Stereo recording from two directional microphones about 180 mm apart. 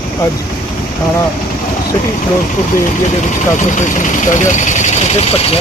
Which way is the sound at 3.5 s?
45° left (ahead or behind).